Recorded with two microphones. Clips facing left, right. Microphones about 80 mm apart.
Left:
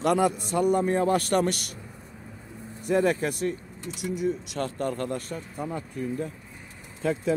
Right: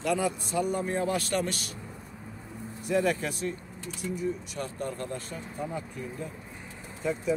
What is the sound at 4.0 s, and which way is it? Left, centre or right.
Speech, left.